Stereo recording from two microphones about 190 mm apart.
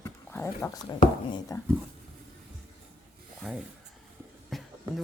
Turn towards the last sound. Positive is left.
turn(degrees=0)  # may be behind; listen again after turning